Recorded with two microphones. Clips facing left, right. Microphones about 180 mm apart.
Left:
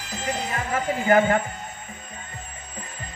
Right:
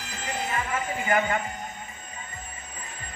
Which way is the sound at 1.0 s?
55° left (ahead or behind).